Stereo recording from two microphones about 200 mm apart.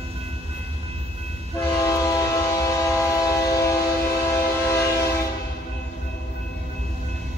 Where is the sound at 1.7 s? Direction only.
15° left (ahead or behind).